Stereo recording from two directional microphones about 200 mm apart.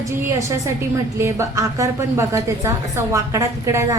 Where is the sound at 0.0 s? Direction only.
15° right (ahead or behind).